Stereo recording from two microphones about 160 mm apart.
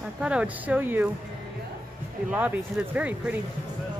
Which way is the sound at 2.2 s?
10° right (ahead or behind).